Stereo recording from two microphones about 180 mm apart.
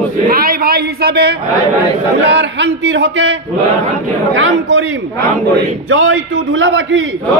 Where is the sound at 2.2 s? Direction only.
75° right (ahead or behind).